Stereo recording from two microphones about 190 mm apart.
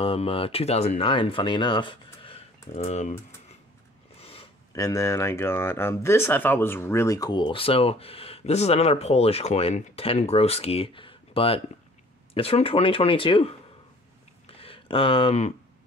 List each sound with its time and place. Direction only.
0.0 s speech: 30° left (ahead or behind)
2.2 s typing: 30° left (ahead or behind)
4.2 s a sound: 30° left (ahead or behind)
4.7 s speech: 15° left (ahead or behind)
14.6 s speech: 30° left (ahead or behind)